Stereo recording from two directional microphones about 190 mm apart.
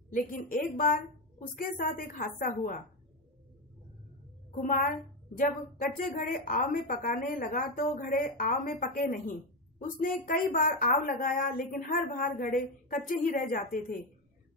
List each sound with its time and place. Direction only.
0.1 s a woman's voice: 50° left (ahead or behind)
4.6 s a woman's voice: 45° left (ahead or behind)